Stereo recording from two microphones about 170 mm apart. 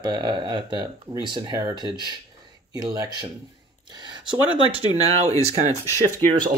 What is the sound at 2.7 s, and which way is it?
Speech, 20° right (ahead or behind).